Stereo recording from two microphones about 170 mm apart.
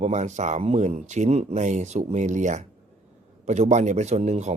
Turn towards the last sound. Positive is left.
turn(degrees=-40)  # may be behind; listen again after turning